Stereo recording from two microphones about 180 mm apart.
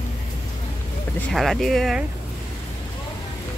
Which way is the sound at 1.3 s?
Centre (ahead or behind).